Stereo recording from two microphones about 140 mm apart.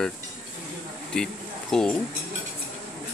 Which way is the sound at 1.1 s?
5° left (ahead or behind).